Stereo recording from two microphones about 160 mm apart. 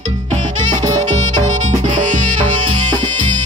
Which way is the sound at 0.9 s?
50° right (ahead or behind).